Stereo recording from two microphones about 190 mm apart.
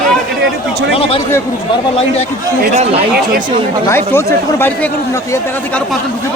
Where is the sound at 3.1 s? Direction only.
50° right (ahead or behind).